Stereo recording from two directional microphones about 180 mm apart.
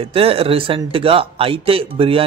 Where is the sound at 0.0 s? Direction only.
30° right (ahead or behind).